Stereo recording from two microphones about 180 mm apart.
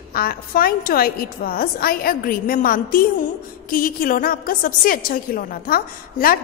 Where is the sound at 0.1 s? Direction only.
55° left (ahead or behind).